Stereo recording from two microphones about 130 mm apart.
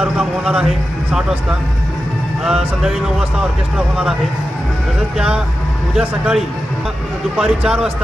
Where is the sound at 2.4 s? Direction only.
5° right (ahead or behind).